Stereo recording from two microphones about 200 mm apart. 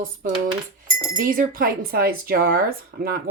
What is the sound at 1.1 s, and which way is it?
Speech, 45° right (ahead or behind).